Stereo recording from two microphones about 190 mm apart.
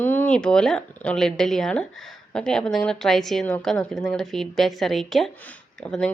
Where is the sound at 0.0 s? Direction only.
10° left (ahead or behind).